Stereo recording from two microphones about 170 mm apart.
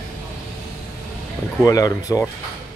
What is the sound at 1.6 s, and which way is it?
Speech, 20° left (ahead or behind).